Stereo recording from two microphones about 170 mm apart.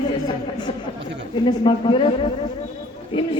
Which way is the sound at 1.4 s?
30° left (ahead or behind).